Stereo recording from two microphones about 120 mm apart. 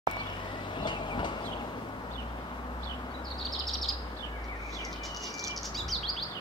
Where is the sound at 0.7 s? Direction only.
40° left (ahead or behind).